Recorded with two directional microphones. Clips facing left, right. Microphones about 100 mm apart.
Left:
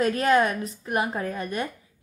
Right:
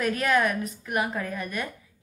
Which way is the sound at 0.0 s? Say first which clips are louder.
Left 3 dB; 30° left (ahead or behind).